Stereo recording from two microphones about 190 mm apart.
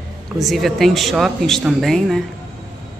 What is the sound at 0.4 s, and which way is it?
Speech, centre (ahead or behind).